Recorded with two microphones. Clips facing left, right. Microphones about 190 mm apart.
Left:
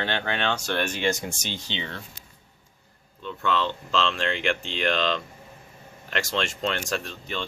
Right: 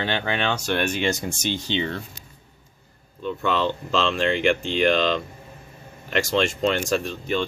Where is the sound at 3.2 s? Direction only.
10° right (ahead or behind).